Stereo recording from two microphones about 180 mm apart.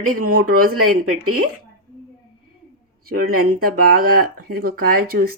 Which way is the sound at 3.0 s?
55° right (ahead or behind).